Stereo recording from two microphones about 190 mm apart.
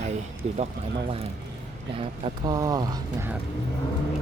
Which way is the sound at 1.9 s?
30° right (ahead or behind).